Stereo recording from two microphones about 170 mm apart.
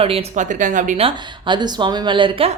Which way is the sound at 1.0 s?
25° right (ahead or behind).